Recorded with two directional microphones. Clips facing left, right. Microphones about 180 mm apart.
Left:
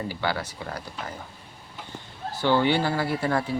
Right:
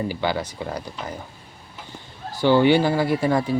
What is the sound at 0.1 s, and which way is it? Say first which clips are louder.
Speech: right 4 dB; 20° right (ahead or behind).